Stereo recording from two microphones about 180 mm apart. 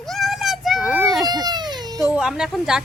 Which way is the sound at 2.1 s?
5° right (ahead or behind).